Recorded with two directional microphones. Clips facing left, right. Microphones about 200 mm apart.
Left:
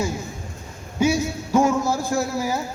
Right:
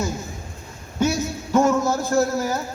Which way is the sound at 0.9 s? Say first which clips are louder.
Left 2 dB; 10° left (ahead or behind).